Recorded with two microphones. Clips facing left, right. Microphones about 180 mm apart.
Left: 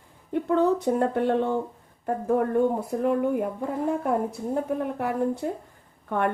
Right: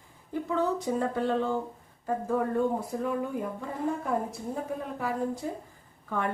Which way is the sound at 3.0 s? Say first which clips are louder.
Left 10 dB; 60° left (ahead or behind).